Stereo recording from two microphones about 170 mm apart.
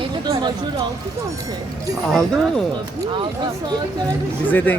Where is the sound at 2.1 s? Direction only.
Centre (ahead or behind).